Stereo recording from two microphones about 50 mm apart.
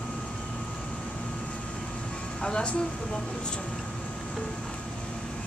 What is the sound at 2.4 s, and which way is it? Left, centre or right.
Speech, centre.